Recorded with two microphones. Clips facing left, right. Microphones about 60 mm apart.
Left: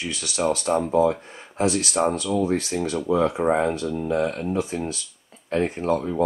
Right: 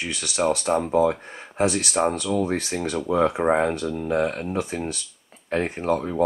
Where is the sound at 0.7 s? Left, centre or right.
Centre.